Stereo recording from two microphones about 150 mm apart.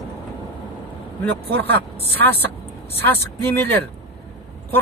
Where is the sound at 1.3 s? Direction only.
10° left (ahead or behind).